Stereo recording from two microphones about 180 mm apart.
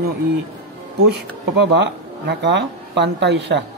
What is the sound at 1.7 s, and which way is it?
Speech, 75° right (ahead or behind).